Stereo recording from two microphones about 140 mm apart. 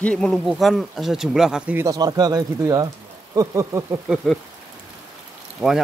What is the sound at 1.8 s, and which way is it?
Speech, 25° right (ahead or behind).